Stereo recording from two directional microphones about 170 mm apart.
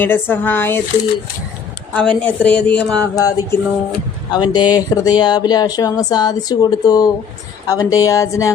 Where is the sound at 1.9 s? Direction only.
5° left (ahead or behind).